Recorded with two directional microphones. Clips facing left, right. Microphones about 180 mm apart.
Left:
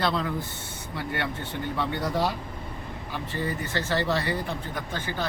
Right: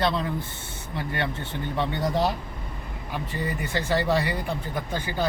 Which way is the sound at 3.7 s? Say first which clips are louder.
Right 4 dB; 15° right (ahead or behind).